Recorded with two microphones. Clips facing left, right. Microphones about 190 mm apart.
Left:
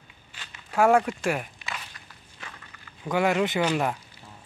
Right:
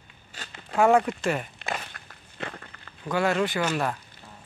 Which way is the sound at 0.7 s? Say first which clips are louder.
Even; 10° left (ahead or behind).